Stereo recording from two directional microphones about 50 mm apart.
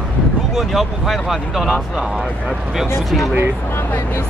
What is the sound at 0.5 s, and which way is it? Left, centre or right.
Speech, centre.